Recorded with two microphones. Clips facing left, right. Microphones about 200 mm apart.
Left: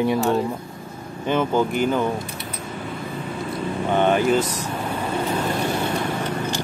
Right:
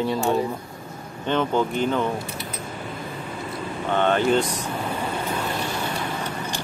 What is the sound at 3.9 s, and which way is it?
Speech, 10° left (ahead or behind).